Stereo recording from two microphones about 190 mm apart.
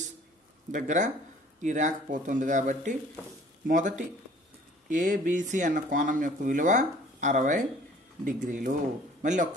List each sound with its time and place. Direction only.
0.7 s speech: 40° right (ahead or behind)